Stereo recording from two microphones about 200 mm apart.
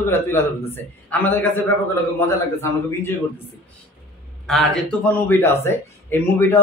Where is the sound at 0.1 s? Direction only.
10° left (ahead or behind).